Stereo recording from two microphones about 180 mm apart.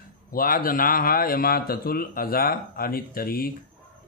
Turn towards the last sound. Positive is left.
turn(degrees=55)  # may be behind; listen again after turning